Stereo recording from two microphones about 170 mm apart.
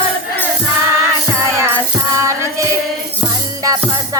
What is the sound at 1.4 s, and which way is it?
Music, 15° right (ahead or behind).